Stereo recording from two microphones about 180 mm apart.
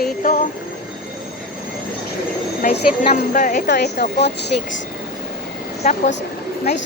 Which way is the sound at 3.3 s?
45° left (ahead or behind).